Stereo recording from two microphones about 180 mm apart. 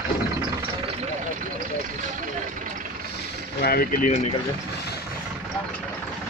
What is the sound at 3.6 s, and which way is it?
Speech, 55° left (ahead or behind).